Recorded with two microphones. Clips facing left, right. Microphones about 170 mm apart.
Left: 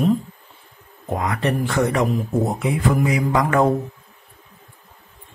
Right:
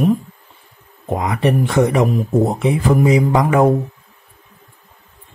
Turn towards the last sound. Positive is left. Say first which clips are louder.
# right 4 dB
turn(degrees=-10)  # may be behind; listen again after turning